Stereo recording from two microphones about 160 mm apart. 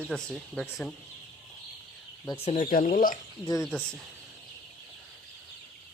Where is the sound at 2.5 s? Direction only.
55° left (ahead or behind).